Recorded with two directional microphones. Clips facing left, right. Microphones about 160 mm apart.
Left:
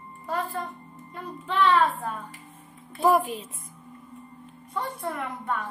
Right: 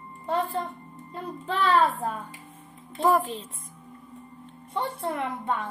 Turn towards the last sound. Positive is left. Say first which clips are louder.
# right 2 dB
turn(degrees=-25)  # may be behind; listen again after turning